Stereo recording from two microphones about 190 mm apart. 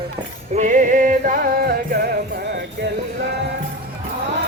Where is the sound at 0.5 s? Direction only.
40° right (ahead or behind).